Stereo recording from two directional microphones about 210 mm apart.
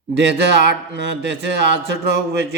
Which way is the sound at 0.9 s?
55° right (ahead or behind).